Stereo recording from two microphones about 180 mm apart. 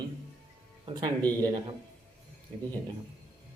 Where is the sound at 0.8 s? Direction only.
25° right (ahead or behind).